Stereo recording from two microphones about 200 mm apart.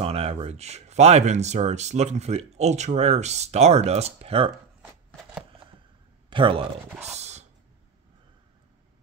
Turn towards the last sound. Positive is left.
turn(degrees=-35)  # may be behind; listen again after turning